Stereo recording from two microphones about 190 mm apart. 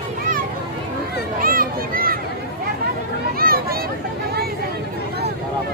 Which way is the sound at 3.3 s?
50° right (ahead or behind).